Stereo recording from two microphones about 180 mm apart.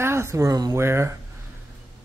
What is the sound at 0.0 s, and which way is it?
Speech, 15° right (ahead or behind).